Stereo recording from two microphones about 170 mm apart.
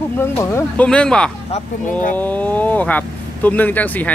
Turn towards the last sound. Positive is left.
turn(degrees=10)  # may be behind; listen again after turning